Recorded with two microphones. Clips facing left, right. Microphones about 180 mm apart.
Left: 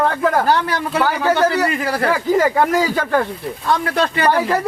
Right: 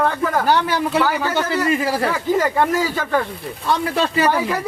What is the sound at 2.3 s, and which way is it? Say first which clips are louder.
Speech: left 2 dB; 10° left (ahead or behind).